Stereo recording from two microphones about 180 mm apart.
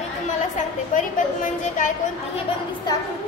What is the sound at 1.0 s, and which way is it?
Speech, 45° left (ahead or behind).